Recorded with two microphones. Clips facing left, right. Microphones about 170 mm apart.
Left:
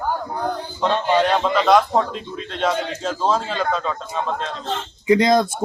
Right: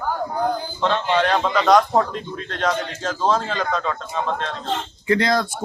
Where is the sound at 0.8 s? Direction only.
10° left (ahead or behind).